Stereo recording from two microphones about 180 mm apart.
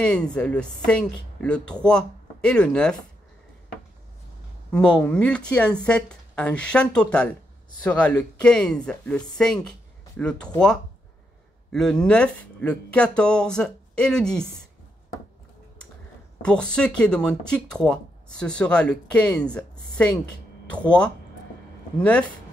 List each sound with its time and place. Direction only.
0.0 s speech: 5° left (ahead or behind)
4.7 s speech: 5° left (ahead or behind)
11.7 s speech: 5° left (ahead or behind)
16.4 s speech: 5° left (ahead or behind)
20.7 s speech: 5° left (ahead or behind)